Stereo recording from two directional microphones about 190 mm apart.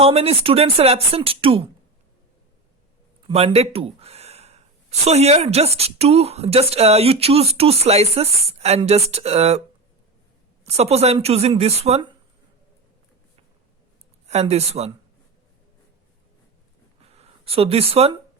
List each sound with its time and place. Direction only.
0.0 s speech: 30° right (ahead or behind)
3.2 s speech: 30° right (ahead or behind)
10.6 s speech: 35° right (ahead or behind)
14.3 s speech: 35° right (ahead or behind)
17.0 s a sound: 30° right (ahead or behind)